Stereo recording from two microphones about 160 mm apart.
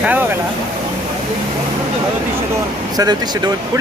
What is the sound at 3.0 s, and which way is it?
Speech, 25° right (ahead or behind).